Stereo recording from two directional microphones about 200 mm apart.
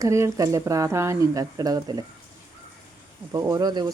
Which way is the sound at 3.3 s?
15° right (ahead or behind).